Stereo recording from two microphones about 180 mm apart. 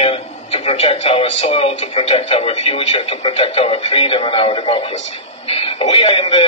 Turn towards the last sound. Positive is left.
turn(degrees=35)  # may be behind; listen again after turning